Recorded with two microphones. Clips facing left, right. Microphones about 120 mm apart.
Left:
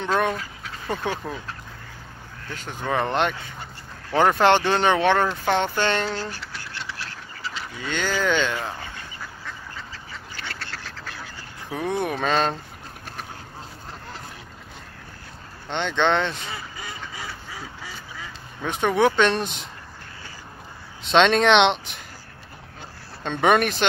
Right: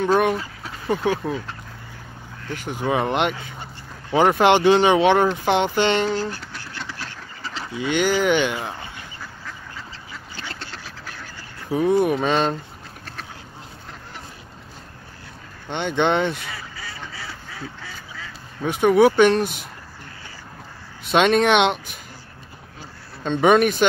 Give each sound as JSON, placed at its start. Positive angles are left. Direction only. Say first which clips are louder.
{"t": 0.0, "sound": "speech", "louder": "right 5 dB", "side_deg": -10}
{"t": 2.5, "sound": "speech", "louder": "right 3 dB", "side_deg": -15}
{"t": 6.0, "sound": "speech", "louder": "right 5 dB", "side_deg": -5}
{"t": 7.7, "sound": "speech", "louder": "right 7 dB", "side_deg": -15}
{"t": 10.3, "sound": "duck", "louder": "right 1 dB", "side_deg": -20}
{"t": 10.8, "sound": "duck", "louder": "even", "side_deg": -5}
{"t": 11.7, "sound": "speech", "louder": "right 7 dB", "side_deg": -5}
{"t": 15.7, "sound": "speech", "louder": "right 1 dB", "side_deg": -15}
{"t": 16.5, "sound": "quack", "louder": "even", "side_deg": 20}
{"t": 18.6, "sound": "speech", "louder": "right 5 dB", "side_deg": -10}
{"t": 21.0, "sound": "speech", "louder": "right 1 dB", "side_deg": -5}
{"t": 23.4, "sound": "speech", "louder": "right 4 dB", "side_deg": 0}